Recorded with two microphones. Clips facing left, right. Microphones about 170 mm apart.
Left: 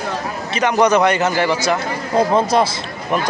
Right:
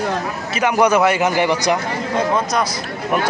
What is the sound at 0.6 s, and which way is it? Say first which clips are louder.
Speech: left 1 dB; 10° right (ahead or behind).